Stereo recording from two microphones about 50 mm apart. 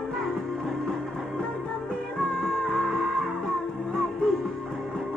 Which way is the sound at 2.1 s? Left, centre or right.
Centre.